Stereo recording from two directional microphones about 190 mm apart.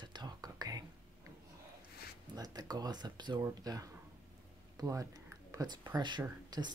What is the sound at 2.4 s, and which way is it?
Speech, 20° right (ahead or behind).